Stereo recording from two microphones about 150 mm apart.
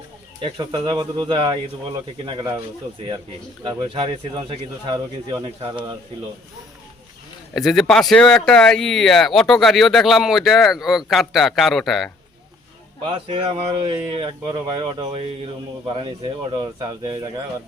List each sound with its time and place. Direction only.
0.4 s speech: 30° right (ahead or behind)
3.6 s speech: 30° right (ahead or behind)
7.5 s speech: centre (ahead or behind)
13.1 s speech: 35° right (ahead or behind)